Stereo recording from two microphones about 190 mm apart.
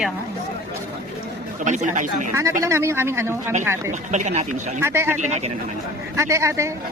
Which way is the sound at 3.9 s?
40° right (ahead or behind).